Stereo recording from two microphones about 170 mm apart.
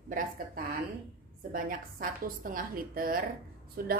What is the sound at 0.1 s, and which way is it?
A woman's voice, 50° right (ahead or behind).